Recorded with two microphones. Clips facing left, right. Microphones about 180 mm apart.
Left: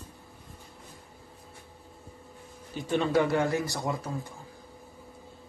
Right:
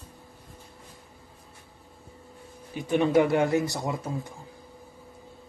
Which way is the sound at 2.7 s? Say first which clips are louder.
Right 4 dB; 15° right (ahead or behind).